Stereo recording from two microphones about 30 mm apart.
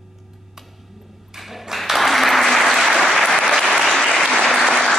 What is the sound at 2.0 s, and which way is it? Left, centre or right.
Applause, centre.